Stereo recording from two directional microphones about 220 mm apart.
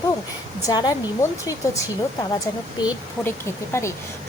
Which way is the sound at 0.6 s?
15° left (ahead or behind).